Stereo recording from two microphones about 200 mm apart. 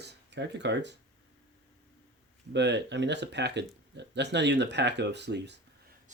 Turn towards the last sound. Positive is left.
turn(degrees=-60)  # may be behind; listen again after turning